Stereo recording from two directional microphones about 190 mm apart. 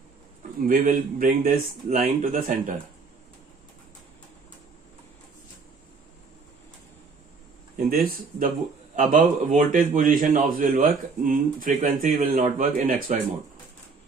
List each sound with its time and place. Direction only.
0.6 s speech: 45° right (ahead or behind)
7.7 s speech: 50° right (ahead or behind)